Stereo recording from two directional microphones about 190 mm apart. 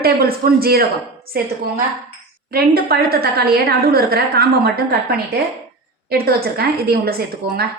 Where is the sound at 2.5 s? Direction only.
55° right (ahead or behind).